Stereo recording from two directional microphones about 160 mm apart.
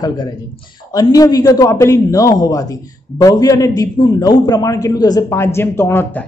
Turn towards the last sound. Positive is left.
turn(degrees=10)  # may be behind; listen again after turning